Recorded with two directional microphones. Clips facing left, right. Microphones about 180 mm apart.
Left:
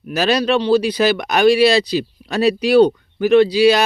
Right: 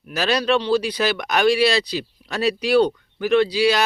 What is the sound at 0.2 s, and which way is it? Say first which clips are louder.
Speech: left 3 dB; 15° left (ahead or behind).